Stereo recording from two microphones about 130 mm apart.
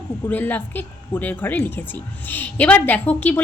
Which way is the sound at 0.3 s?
15° left (ahead or behind).